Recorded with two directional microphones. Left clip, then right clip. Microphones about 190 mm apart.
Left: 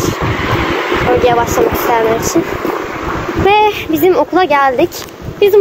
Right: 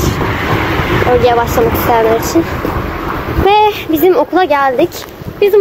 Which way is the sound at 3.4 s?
Centre (ahead or behind).